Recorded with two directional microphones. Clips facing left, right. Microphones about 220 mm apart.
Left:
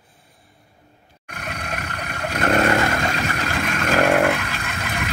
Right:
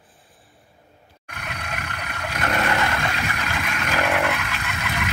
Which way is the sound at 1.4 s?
35° left (ahead or behind).